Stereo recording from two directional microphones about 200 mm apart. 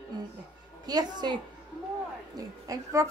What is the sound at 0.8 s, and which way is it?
Speech, 20° right (ahead or behind).